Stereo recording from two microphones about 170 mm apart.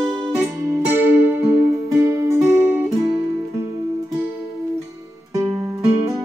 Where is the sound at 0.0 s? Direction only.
15° right (ahead or behind).